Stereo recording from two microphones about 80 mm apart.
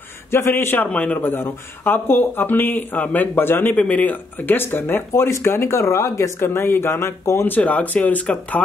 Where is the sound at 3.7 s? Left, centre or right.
Centre; by 7.5 s left.